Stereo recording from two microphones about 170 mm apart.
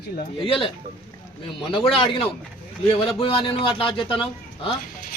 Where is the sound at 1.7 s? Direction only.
30° left (ahead or behind).